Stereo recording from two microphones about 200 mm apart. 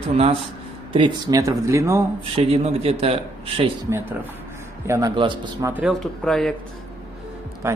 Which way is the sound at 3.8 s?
10° right (ahead or behind).